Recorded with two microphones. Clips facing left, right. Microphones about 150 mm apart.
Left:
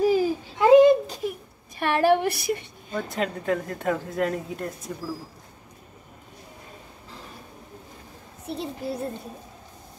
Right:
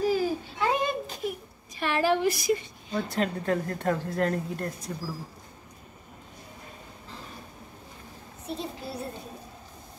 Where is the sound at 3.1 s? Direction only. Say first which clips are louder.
Left 2 dB; 5° left (ahead or behind).